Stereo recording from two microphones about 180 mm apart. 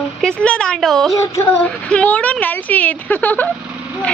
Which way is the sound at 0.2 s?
5° left (ahead or behind).